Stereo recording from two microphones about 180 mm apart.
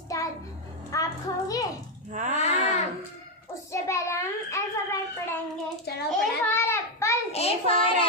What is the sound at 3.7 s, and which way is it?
Child singing, 15° left (ahead or behind).